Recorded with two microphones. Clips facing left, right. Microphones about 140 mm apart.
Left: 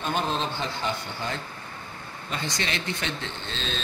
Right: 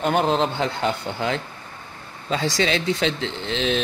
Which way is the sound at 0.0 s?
70° right (ahead or behind).